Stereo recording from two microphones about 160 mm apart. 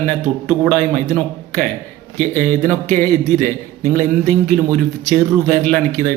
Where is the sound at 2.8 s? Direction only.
15° left (ahead or behind).